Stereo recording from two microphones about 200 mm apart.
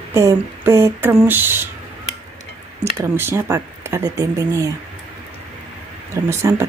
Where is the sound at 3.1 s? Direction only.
10° right (ahead or behind).